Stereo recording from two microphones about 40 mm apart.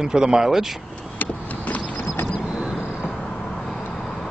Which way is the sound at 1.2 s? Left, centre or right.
Left.